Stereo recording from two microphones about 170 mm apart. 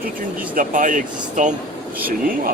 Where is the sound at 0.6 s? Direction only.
50° right (ahead or behind).